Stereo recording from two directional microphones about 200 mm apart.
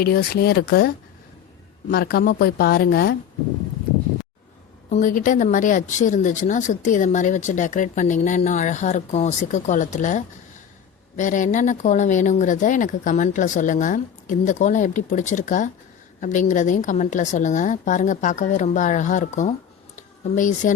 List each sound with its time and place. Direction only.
0.0 s speech: 50° left (ahead or behind)
4.9 s speech: 40° left (ahead or behind)